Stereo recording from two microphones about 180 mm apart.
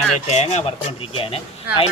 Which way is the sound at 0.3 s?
40° left (ahead or behind).